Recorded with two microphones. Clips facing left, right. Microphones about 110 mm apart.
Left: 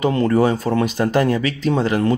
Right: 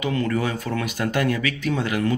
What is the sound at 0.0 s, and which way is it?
Speech, 35° left (ahead or behind).